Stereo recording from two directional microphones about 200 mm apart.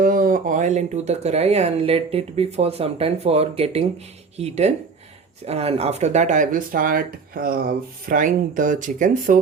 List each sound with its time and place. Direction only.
0.0 s speech: 45° right (ahead or behind)